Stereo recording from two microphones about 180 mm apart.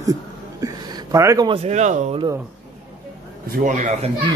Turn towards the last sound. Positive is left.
turn(degrees=-40)  # may be behind; listen again after turning